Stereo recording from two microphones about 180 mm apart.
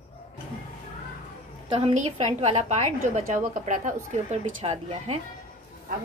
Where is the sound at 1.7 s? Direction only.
30° right (ahead or behind).